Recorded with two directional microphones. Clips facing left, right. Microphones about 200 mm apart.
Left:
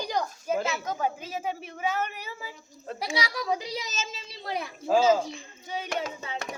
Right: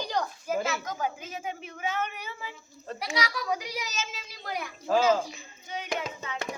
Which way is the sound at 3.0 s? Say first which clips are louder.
Left 1 dB; 25° left (ahead or behind).